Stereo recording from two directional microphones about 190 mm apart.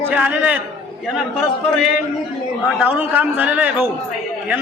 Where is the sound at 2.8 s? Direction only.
10° right (ahead or behind).